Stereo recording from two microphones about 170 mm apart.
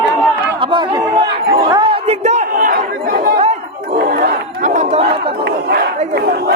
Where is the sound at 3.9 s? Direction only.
70° right (ahead or behind).